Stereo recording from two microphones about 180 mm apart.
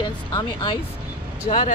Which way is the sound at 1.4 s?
40° left (ahead or behind).